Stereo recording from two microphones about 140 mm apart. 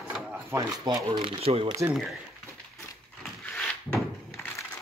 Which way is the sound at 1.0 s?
40° right (ahead or behind).